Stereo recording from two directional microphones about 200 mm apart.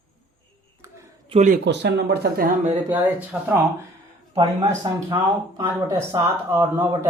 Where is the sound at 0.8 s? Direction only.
15° right (ahead or behind).